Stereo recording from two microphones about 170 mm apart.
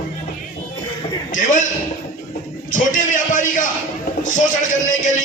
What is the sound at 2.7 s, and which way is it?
A man's voice, 50° left (ahead or behind).